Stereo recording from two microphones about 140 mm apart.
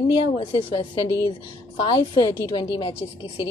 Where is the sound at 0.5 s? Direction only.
35° left (ahead or behind).